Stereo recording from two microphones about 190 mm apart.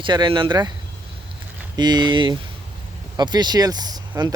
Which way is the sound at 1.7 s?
20° right (ahead or behind).